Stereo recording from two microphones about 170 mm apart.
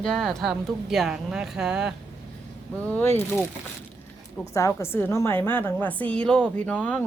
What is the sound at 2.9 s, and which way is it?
Speech, 15° left (ahead or behind).